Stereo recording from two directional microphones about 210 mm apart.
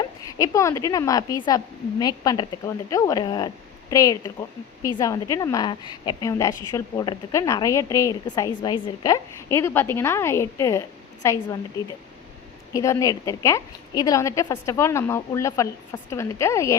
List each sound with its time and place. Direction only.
0.3 s a woman's voice: 15° left (ahead or behind)
12.7 s a woman's voice: 15° left (ahead or behind)